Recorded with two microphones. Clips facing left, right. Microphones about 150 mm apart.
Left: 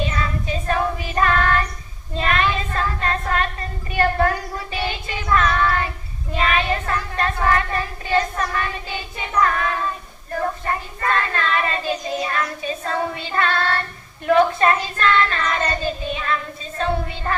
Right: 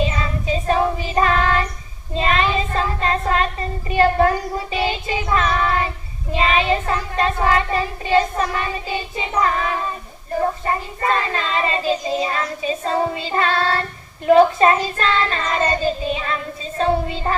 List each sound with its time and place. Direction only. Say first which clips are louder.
0.7 s female singing: right 3 dB; 25° right (ahead or behind)
2.1 s child singing: right 2 dB; 25° right (ahead or behind)